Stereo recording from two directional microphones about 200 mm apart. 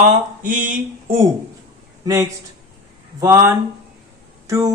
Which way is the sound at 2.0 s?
15° right (ahead or behind).